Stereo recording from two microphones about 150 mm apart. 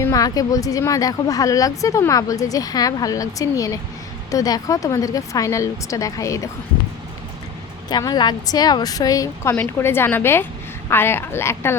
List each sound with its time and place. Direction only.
0.0 s speech: 25° left (ahead or behind)
7.9 s speech: 25° left (ahead or behind)